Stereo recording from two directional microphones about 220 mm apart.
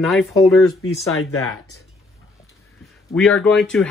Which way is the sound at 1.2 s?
75° left (ahead or behind).